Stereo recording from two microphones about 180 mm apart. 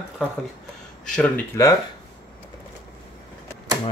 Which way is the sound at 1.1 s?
5° left (ahead or behind).